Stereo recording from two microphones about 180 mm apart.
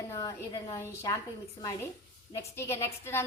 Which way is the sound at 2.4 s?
15° left (ahead or behind).